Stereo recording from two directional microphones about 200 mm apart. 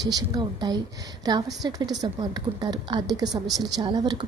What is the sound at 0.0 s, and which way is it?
Speech, 20° right (ahead or behind).